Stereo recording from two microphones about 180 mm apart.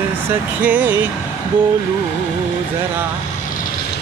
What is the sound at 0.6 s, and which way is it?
Music, 10° right (ahead or behind).